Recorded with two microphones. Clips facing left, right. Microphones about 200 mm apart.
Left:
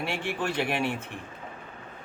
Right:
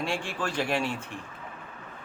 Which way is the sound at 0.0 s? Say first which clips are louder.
Left 1 dB; 60° left (ahead or behind).